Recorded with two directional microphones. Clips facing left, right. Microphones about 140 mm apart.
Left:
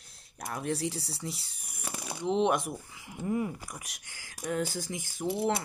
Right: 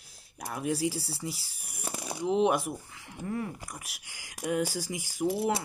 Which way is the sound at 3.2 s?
15° left (ahead or behind).